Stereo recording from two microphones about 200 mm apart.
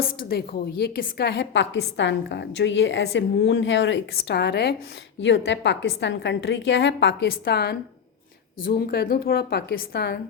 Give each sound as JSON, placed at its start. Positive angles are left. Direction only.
{"t": 0.0, "sound": "a woman's voice", "side_deg": 50}